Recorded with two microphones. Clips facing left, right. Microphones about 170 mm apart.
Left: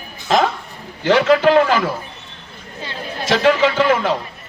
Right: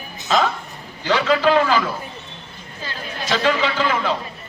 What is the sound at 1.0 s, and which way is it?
Speech, 50° left (ahead or behind).